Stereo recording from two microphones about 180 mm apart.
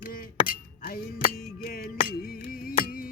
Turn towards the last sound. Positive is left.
turn(degrees=50)  # may be behind; listen again after turning